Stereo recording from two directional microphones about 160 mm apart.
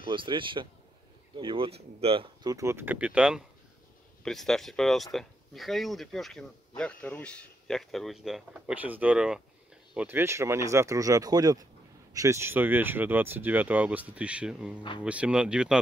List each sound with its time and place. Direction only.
0.0 s speech: 30° right (ahead or behind)
2.4 s speech: 20° right (ahead or behind)